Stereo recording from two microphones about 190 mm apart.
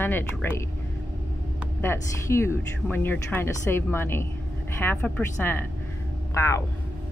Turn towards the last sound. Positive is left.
turn(degrees=15)  # may be behind; listen again after turning